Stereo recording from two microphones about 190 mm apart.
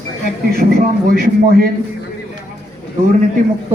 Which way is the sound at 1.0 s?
50° right (ahead or behind).